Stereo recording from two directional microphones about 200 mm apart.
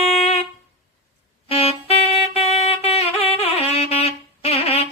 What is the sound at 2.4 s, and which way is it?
Wind instrument, 30° left (ahead or behind).